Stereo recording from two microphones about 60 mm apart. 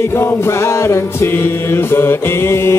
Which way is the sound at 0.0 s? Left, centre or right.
Left.